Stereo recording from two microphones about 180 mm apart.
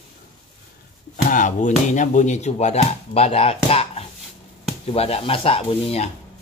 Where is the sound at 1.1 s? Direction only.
45° left (ahead or behind).